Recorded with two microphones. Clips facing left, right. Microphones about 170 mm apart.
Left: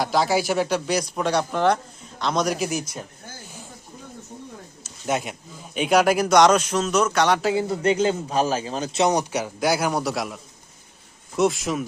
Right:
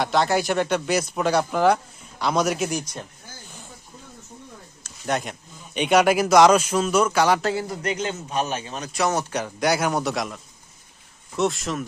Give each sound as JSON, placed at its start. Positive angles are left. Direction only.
{"t": 0.0, "sound": "speech", "side_deg": 0}
{"t": 5.0, "sound": "speech", "side_deg": 5}
{"t": 7.5, "sound": "speech", "side_deg": 30}